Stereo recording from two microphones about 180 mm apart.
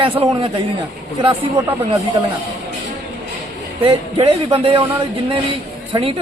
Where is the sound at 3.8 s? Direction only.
30° right (ahead or behind).